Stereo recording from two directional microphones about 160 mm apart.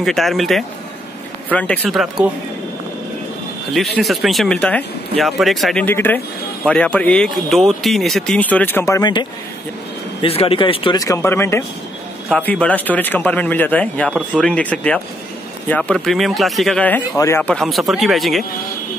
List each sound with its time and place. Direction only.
0.0 s speech: centre (ahead or behind)
3.7 s speech: centre (ahead or behind); by 11.0 s 30° left (ahead or behind)
11.0 s speech: 20° left (ahead or behind); by 18.4 s centre (ahead or behind)